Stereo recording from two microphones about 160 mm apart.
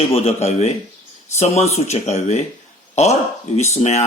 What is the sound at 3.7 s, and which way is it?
Speech, 45° left (ahead or behind).